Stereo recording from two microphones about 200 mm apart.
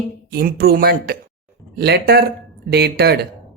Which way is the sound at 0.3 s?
50° right (ahead or behind).